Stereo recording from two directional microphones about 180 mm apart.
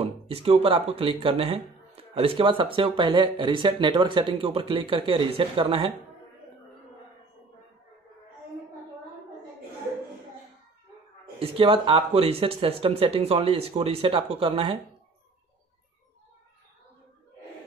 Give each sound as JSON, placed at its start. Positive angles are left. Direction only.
{"t": 0.0, "sound": "speech", "side_deg": -35}
{"t": 11.3, "sound": "speech", "side_deg": -30}